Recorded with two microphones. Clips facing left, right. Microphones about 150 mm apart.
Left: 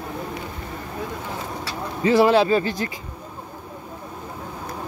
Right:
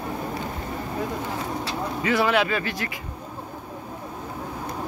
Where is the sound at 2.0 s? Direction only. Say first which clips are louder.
Left 6 dB; 30° left (ahead or behind).